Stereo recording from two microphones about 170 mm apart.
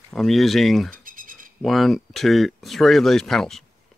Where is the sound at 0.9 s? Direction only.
55° right (ahead or behind).